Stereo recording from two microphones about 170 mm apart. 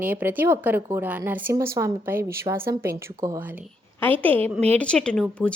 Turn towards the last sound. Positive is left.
turn(degrees=5)  # may be behind; listen again after turning